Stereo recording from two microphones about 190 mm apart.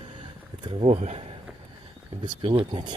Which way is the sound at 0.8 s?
30° right (ahead or behind).